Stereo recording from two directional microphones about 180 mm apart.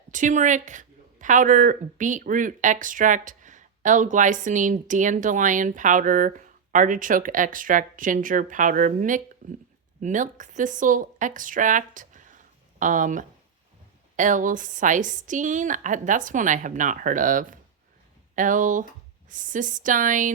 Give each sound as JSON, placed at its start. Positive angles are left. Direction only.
{"t": 0.1, "sound": "speech", "side_deg": -45}